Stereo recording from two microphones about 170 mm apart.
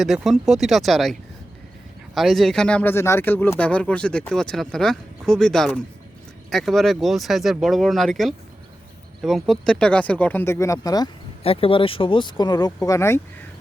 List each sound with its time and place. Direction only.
0.0 s speech: centre (ahead or behind)
2.1 s speech: centre (ahead or behind); by 11.1 s 20° left (ahead or behind)
11.4 s speech: 35° left (ahead or behind); by 13.2 s 15° left (ahead or behind)